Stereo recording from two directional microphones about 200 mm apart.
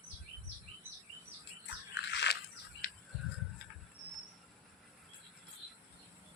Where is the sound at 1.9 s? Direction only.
60° left (ahead or behind).